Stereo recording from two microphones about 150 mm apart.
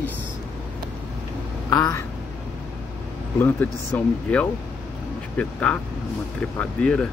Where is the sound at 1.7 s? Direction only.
20° left (ahead or behind).